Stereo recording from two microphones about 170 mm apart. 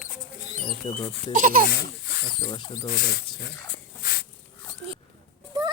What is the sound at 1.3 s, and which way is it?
Speech, 50° right (ahead or behind).